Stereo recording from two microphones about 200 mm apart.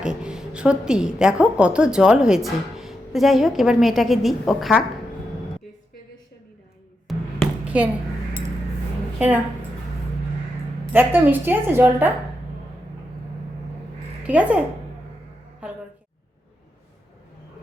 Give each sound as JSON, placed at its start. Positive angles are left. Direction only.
{"t": 0.0, "sound": "a woman's voice", "side_deg": -5}
{"t": 7.1, "sound": "a sound", "side_deg": 0}
{"t": 9.1, "sound": "a woman's voice", "side_deg": -5}
{"t": 10.9, "sound": "a woman's voice", "side_deg": -10}
{"t": 14.3, "sound": "a woman's voice", "side_deg": -5}
{"t": 15.6, "sound": "a sound", "side_deg": -5}